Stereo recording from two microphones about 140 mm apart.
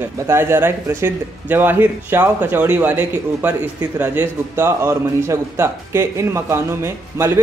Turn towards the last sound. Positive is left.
turn(degrees=-20)  # may be behind; listen again after turning